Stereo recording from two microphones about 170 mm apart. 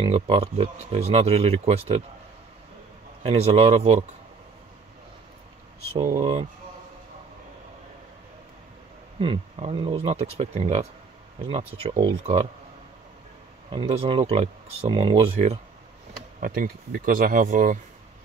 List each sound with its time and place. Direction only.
0.0 s speech: 35° right (ahead or behind)
3.3 s speech: 40° right (ahead or behind)
9.2 s speech: 35° right (ahead or behind)
13.7 s speech: 30° right (ahead or behind)
16.1 s speech: 55° right (ahead or behind)